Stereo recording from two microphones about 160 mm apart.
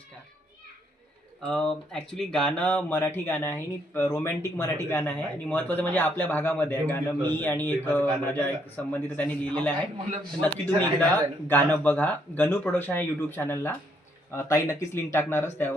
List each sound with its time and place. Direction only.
1.5 s speech: 5° left (ahead or behind)
11.1 s speech: 15° left (ahead or behind)